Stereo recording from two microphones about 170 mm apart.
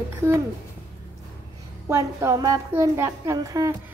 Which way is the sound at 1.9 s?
20° right (ahead or behind).